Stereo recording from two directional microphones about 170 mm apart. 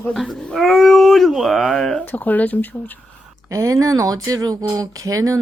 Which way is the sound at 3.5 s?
20° right (ahead or behind).